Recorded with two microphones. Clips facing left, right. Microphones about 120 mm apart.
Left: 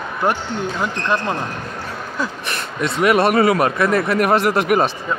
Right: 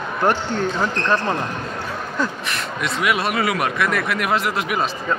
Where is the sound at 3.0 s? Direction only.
45° left (ahead or behind).